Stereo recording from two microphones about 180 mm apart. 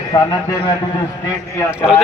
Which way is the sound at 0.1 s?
20° left (ahead or behind).